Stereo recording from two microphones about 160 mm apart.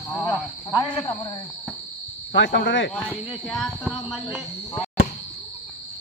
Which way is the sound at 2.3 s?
90° left.